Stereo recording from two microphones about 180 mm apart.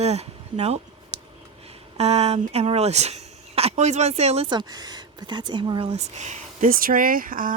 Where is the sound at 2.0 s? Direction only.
35° right (ahead or behind).